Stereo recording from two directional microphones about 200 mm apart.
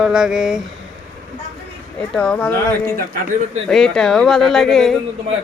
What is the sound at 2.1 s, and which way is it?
Speech, 5° left (ahead or behind).